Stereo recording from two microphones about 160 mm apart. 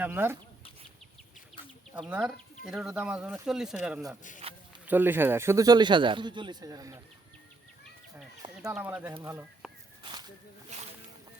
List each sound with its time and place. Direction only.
0.0 s speech: 15° right (ahead or behind)
2.0 s speech: 5° right (ahead or behind)
4.9 s speech: 10° right (ahead or behind)
8.6 s speech: 10° right (ahead or behind)
10.0 s snake: 30° right (ahead or behind)